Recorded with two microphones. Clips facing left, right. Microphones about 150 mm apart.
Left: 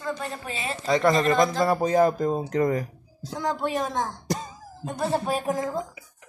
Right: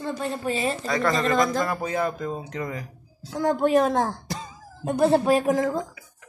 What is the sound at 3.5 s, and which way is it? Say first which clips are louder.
Speech: right 8 dB; 50° right (ahead or behind).